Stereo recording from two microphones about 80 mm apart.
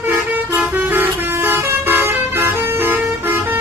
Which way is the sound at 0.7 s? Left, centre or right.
Right.